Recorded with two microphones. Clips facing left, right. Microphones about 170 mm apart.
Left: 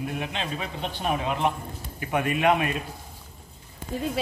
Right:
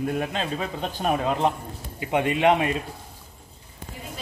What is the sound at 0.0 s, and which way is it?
Speech, 40° right (ahead or behind).